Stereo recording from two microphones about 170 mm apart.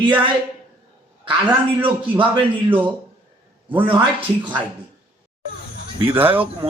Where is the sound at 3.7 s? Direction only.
30° right (ahead or behind).